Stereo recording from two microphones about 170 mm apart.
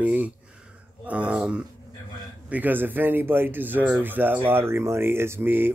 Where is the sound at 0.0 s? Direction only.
10° right (ahead or behind).